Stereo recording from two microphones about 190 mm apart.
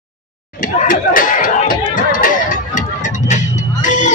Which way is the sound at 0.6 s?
45° left (ahead or behind).